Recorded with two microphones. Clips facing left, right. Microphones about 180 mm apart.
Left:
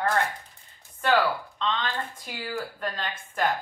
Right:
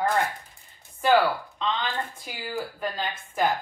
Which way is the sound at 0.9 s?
10° right (ahead or behind).